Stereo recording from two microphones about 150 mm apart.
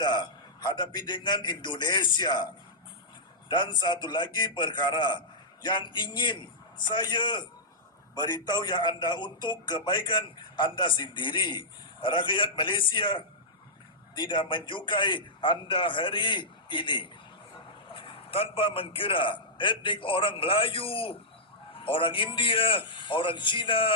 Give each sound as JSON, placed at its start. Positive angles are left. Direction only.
{"t": 0.0, "sound": "a man's voice", "side_deg": 30}
{"t": 3.5, "sound": "a man's voice", "side_deg": 30}